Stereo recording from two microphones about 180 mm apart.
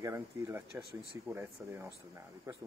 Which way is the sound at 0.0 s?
15° right (ahead or behind).